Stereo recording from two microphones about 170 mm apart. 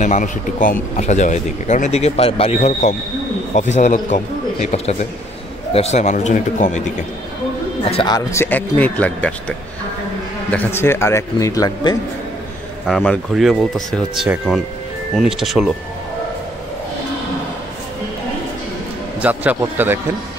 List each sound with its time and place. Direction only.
0.0 s speech: 45° left (ahead or behind)
7.9 s speech: 30° left (ahead or behind)
8.3 s a man's voice: 15° left (ahead or behind)
10.5 s a man's voice: 10° left (ahead or behind)
12.8 s speech: centre (ahead or behind)
19.2 s a man's voice: 10° right (ahead or behind)